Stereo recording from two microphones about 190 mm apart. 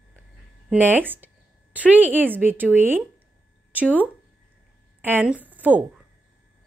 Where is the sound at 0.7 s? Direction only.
10° right (ahead or behind).